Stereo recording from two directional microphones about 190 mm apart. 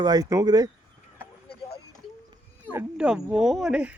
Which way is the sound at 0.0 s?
20° right (ahead or behind).